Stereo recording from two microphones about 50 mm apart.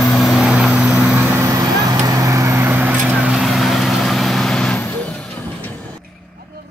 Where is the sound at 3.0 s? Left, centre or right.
Right.